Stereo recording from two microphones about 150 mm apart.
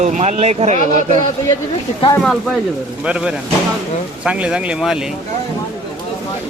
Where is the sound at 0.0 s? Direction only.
50° right (ahead or behind).